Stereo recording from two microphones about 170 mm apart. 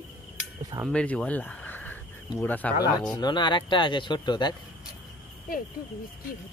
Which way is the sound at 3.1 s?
25° left (ahead or behind).